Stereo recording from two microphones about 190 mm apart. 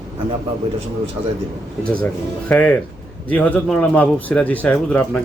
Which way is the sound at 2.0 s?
10° left (ahead or behind).